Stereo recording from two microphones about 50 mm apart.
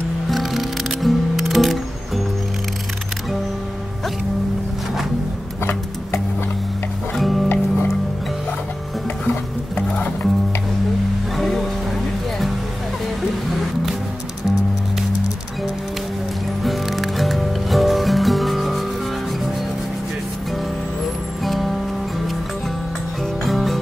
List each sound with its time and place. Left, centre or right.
0.3 s music: centre
5.6 s music: left
7.2 s music: centre
7.4 s music: left
9.2 s stir: left
11.3 s music: centre
16.6 s music: centre
21.5 s music: centre
23.4 s music: centre